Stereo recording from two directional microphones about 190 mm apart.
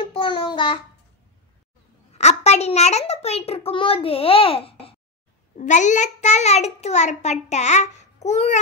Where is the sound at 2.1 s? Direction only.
35° left (ahead or behind).